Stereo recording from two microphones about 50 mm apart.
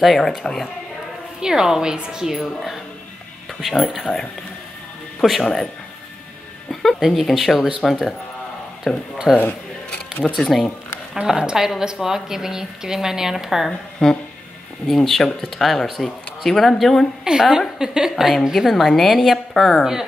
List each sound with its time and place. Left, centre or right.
0.0 s speech: centre
1.4 s a woman's voice: centre
5.2 s speech: centre
6.7 s music: centre
7.0 s speech: centre
8.9 s speech: centre
10.3 s speech: centre
11.2 s a woman's voice: centre
13.7 s speech: centre
17.2 s a woman's voice: centre